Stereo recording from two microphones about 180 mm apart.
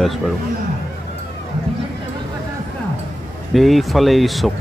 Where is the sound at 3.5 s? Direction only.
Centre (ahead or behind).